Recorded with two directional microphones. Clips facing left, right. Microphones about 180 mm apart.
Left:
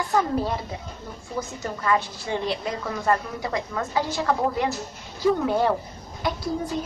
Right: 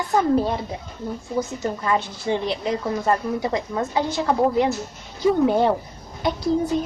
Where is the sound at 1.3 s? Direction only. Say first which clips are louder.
Right 5 dB; 25° right (ahead or behind).